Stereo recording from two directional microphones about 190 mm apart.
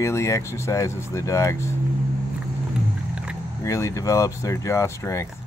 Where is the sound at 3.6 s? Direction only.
15° left (ahead or behind).